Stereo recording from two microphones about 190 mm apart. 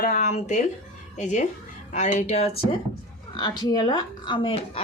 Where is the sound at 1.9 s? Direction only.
40° left (ahead or behind).